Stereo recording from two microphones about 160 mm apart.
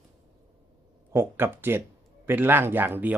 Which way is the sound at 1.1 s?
15° right (ahead or behind).